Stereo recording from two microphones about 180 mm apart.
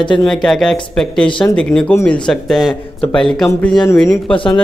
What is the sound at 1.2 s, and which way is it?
Speech, 25° left (ahead or behind).